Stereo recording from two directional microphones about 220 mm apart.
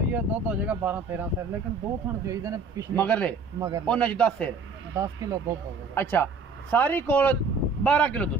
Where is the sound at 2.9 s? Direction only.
5° left (ahead or behind).